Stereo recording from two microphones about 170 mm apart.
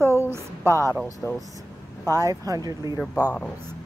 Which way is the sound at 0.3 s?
15° right (ahead or behind).